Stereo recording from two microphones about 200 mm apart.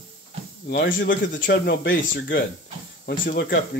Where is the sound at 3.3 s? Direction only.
50° left (ahead or behind).